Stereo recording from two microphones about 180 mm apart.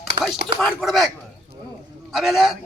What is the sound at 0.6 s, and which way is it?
A man's voice, centre (ahead or behind).